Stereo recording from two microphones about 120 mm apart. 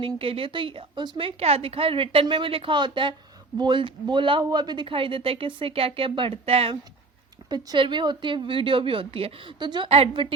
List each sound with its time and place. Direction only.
0.0 s a woman's voice: 50° right (ahead or behind)
7.5 s a woman's voice: 40° right (ahead or behind)
9.9 s a woman's voice: 50° right (ahead or behind)